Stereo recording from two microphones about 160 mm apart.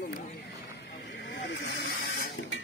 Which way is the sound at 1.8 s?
85° left.